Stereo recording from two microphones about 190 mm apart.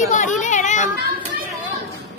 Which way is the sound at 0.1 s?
40° left (ahead or behind).